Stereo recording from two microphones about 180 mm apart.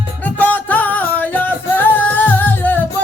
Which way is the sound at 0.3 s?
10° left (ahead or behind).